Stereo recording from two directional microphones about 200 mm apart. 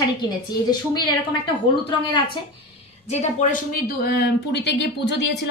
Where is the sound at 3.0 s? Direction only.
35° left (ahead or behind); by 5.4 s 60° left (ahead or behind).